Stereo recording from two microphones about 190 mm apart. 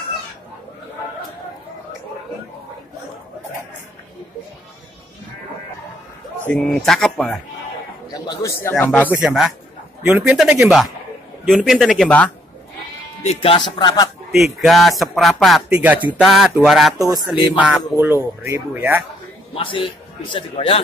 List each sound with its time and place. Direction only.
6.4 s speech: 5° left (ahead or behind)
8.1 s a man's voice: 20° left (ahead or behind)
9.2 s speech: centre (ahead or behind)
13.2 s speech: 30° left (ahead or behind)
14.3 s speech: centre (ahead or behind)
19.5 s speech: 25° left (ahead or behind)